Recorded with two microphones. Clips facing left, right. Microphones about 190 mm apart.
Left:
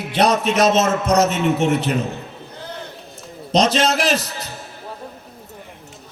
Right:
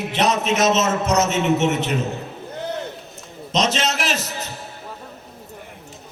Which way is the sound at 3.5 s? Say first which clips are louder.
Left 5 dB; 35° left (ahead or behind).